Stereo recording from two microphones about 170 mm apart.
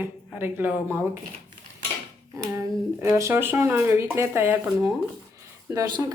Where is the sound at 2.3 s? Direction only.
15° right (ahead or behind).